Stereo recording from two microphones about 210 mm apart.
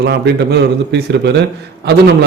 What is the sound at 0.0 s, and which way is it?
A man's voice, 55° right (ahead or behind).